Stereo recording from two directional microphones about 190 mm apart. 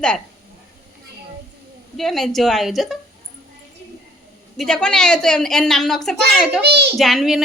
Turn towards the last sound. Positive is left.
turn(degrees=0)  # may be behind; listen again after turning